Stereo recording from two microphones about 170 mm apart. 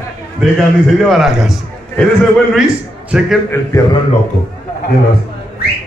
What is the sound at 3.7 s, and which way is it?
Speech, 20° left (ahead or behind).